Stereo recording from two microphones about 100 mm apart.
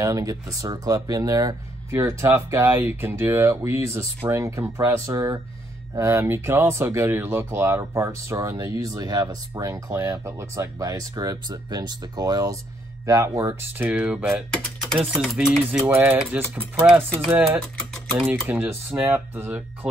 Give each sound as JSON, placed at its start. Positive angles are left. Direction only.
{"t": 0.0, "sound": "speech", "side_deg": -35}
{"t": 13.7, "sound": "speech", "side_deg": -15}
{"t": 14.5, "sound": "speech", "side_deg": 5}
{"t": 15.0, "sound": "stir", "side_deg": -5}
{"t": 15.7, "sound": "speech", "side_deg": -20}
{"t": 18.2, "sound": "speech", "side_deg": -15}